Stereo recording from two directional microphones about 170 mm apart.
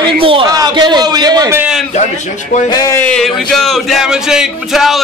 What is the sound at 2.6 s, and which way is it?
Speech, 20° left (ahead or behind).